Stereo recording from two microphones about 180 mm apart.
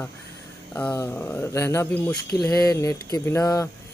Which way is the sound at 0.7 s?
10° left (ahead or behind).